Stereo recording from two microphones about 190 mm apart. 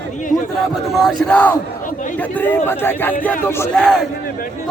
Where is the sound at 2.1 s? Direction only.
10° left (ahead or behind).